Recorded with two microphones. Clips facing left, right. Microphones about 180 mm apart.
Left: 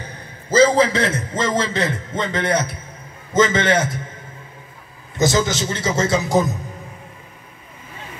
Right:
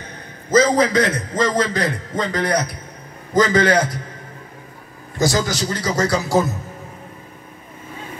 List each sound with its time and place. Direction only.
0.5 s a man's voice: 25° left (ahead or behind)
5.1 s a man's voice: 20° left (ahead or behind)